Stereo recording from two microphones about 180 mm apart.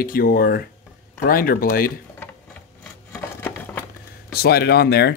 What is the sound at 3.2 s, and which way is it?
Patter, 10° left (ahead or behind).